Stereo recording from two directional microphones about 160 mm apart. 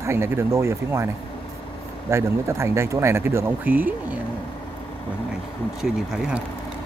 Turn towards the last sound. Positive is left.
turn(degrees=-5)  # may be behind; listen again after turning